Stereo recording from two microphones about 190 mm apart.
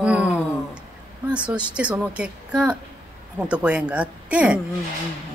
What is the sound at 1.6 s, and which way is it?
Speech, 5° right (ahead or behind).